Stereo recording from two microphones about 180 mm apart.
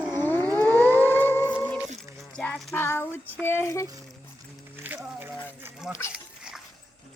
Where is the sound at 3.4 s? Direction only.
10° left (ahead or behind).